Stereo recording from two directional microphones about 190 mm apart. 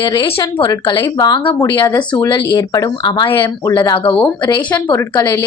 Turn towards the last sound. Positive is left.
turn(degrees=15)  # may be behind; listen again after turning